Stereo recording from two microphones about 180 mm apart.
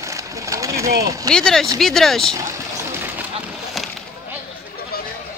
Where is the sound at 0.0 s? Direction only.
15° right (ahead or behind).